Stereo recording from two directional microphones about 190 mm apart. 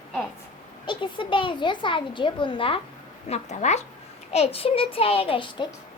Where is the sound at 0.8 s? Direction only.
25° left (ahead or behind).